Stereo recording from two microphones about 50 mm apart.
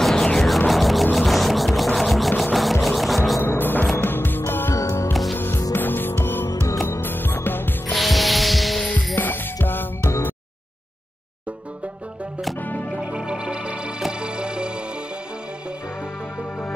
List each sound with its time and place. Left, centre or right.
0.0 s music: centre
3.4 s music: left
7.9 s hum: centre
9.1 s music: left
12.9 s music: right